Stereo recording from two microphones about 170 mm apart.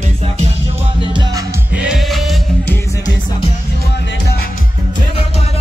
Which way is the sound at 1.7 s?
5° right (ahead or behind).